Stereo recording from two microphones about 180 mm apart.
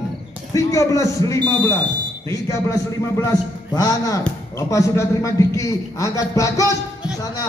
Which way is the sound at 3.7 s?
20° left (ahead or behind).